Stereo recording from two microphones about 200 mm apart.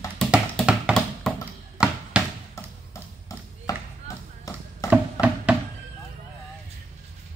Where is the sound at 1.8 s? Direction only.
5° right (ahead or behind).